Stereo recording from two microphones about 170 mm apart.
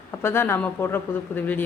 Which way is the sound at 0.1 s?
15° left (ahead or behind).